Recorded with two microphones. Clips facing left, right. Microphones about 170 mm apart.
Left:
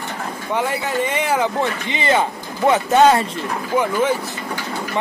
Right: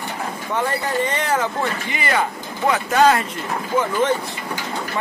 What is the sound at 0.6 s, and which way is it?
Speech, 10° left (ahead or behind).